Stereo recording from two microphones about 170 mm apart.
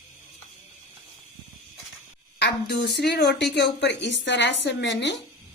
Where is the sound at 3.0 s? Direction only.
80° left.